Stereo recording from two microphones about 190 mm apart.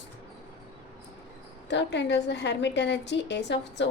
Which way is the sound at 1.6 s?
65° left (ahead or behind).